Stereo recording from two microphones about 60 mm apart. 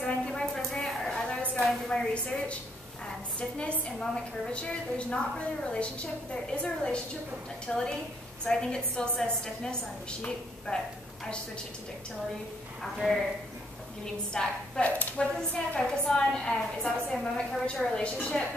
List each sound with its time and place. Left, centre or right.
0.0 s a sound: centre
2.2 s a woman's voice: left
13.0 s speech: centre
14.3 s a woman's voice: centre
14.8 s a woman's voice: left; by 18.5 s centre